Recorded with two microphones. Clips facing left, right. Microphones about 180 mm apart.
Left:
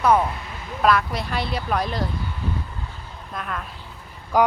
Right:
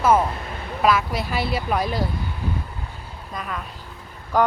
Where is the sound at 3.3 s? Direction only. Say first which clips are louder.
Even; centre (ahead or behind).